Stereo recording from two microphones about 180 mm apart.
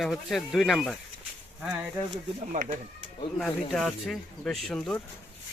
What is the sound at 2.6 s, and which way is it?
Speech, 45° right (ahead or behind).